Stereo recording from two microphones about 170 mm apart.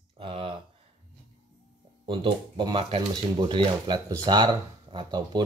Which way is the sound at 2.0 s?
25° right (ahead or behind).